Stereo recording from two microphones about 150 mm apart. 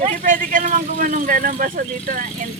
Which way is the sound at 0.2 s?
60° right (ahead or behind).